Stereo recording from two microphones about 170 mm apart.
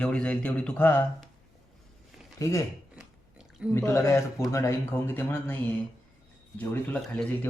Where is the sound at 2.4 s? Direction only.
20° left (ahead or behind).